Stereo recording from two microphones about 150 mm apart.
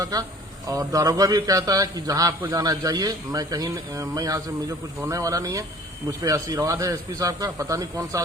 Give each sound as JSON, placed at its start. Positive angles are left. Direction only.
{"t": 0.0, "sound": "a man's voice", "side_deg": -25}